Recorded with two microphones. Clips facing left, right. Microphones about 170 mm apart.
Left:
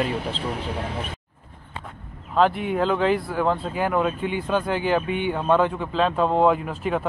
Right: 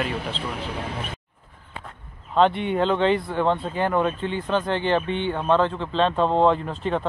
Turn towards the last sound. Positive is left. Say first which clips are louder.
# even
turn(degrees=5)  # may be behind; listen again after turning